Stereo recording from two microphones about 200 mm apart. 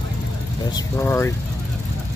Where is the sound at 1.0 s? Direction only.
15° left (ahead or behind).